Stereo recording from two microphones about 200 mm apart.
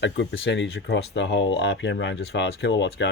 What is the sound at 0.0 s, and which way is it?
Speech, 65° left (ahead or behind).